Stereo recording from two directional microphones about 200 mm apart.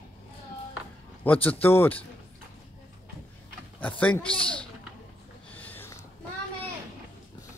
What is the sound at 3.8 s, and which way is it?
Speech, 5° left (ahead or behind).